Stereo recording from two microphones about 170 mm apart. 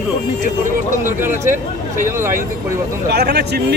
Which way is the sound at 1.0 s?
15° right (ahead or behind).